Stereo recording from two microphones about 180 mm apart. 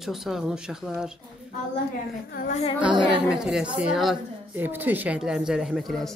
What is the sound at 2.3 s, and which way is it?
Speech, 50° left (ahead or behind).